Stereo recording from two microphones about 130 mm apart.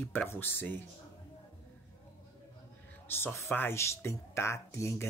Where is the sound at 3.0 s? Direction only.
15° left (ahead or behind).